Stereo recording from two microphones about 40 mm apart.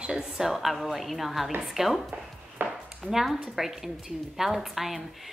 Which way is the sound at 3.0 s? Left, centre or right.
Centre.